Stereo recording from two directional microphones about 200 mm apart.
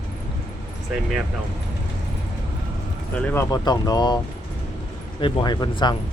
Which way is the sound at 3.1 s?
10° left (ahead or behind).